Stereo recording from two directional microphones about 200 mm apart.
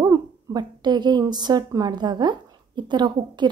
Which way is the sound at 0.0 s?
20° right (ahead or behind).